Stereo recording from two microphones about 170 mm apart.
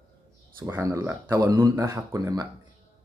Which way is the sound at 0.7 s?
15° right (ahead or behind).